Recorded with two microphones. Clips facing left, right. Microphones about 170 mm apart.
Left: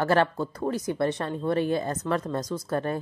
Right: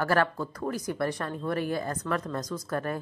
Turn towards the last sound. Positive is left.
turn(degrees=25)  # may be behind; listen again after turning